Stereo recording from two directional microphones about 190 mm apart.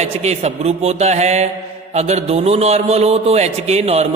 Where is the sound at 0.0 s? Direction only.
35° right (ahead or behind).